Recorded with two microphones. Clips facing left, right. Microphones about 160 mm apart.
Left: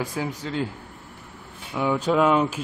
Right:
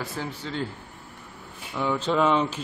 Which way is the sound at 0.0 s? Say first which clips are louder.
Left 4 dB; 15° left (ahead or behind).